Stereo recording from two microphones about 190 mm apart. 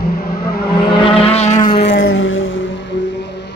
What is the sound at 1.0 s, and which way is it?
Vehicle, 30° left (ahead or behind).